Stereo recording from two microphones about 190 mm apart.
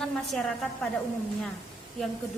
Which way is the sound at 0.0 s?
Centre (ahead or behind).